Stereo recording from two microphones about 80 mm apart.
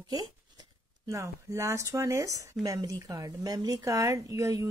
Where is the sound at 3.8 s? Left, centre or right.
Right.